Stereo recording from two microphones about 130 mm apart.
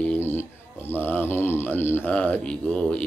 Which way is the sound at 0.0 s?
15° left (ahead or behind).